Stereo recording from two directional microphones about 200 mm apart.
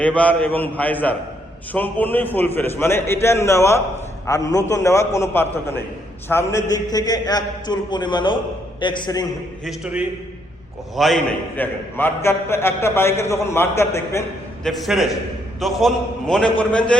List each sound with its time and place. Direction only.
0.0 s a man's voice: 5° left (ahead or behind)
9.6 s a man's voice: 5° right (ahead or behind); by 14.3 s 15° left (ahead or behind)
14.6 s a man's voice: centre (ahead or behind)